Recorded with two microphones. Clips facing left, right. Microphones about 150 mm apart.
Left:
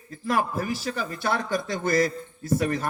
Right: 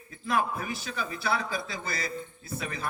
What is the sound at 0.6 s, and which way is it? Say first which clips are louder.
Speech: left 6 dB; 80° left.